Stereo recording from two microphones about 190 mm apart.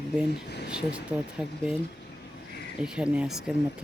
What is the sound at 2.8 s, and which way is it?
Speech, 5° right (ahead or behind).